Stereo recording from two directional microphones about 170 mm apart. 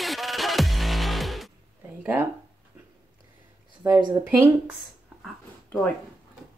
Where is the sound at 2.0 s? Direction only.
10° right (ahead or behind).